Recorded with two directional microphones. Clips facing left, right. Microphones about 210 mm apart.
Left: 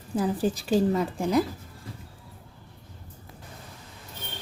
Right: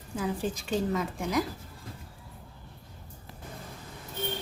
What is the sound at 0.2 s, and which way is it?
A woman's voice, 35° left (ahead or behind).